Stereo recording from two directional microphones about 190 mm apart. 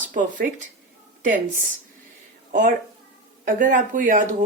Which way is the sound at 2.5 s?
45° right (ahead or behind).